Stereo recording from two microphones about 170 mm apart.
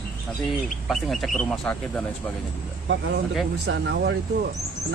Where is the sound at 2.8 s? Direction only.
75° right (ahead or behind).